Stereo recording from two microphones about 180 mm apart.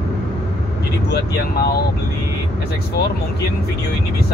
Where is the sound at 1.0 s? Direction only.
65° left (ahead or behind).